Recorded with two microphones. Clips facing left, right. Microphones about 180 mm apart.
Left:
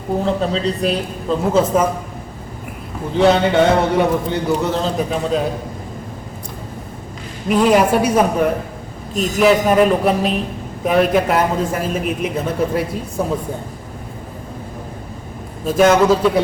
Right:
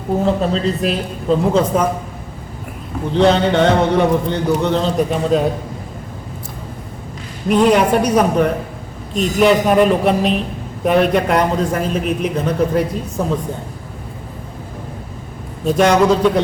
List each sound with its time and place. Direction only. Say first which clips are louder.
0.3 s a man's voice: right 1 dB; centre (ahead or behind)
3.2 s a man's voice: even; 5° left (ahead or behind)
7.4 s a man's voice: right 1 dB; 5° left (ahead or behind)
15.6 s a man's voice: even; 5° left (ahead or behind)